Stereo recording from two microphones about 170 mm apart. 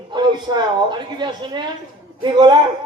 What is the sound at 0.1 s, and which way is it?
A woman's voice, 25° right (ahead or behind).